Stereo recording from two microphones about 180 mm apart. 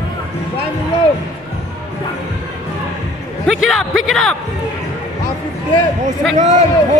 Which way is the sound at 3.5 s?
Centre (ahead or behind).